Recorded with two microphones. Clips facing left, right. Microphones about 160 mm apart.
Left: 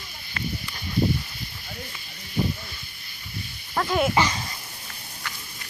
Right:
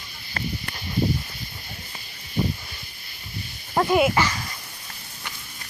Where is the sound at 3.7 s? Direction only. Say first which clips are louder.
Right 5 dB; 25° right (ahead or behind).